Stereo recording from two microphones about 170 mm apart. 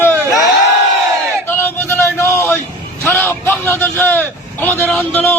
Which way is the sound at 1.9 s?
15° left (ahead or behind).